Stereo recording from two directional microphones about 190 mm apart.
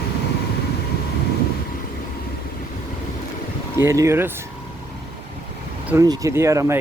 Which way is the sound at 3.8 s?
15° right (ahead or behind).